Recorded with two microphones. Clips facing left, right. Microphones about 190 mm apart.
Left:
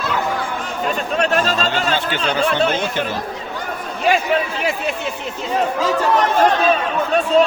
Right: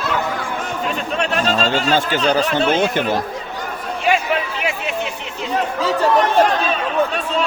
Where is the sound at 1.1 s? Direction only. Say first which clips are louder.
Left 2 dB; 40° left (ahead or behind).